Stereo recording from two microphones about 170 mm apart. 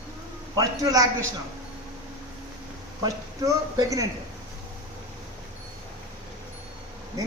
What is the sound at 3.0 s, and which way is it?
Speech, 20° right (ahead or behind).